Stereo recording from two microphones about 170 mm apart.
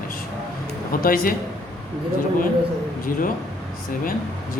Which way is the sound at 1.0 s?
60° left (ahead or behind).